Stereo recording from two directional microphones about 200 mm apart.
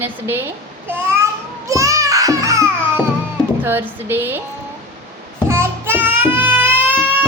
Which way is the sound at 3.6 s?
10° right (ahead or behind).